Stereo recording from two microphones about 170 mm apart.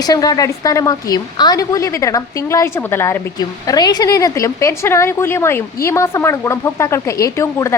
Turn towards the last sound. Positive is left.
turn(degrees=20)  # may be behind; listen again after turning